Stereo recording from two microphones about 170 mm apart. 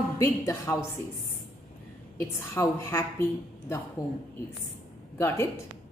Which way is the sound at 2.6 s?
15° left (ahead or behind).